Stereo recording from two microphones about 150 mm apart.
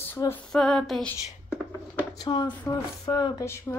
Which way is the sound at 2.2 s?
30° left (ahead or behind).